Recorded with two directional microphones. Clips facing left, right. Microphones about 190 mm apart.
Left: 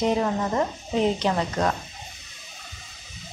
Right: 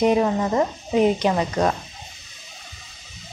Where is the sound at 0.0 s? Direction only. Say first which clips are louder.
Right 4 dB; 15° right (ahead or behind).